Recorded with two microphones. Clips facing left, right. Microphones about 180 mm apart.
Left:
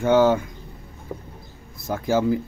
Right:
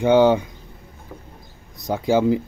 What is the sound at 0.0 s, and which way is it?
Speech, 15° right (ahead or behind).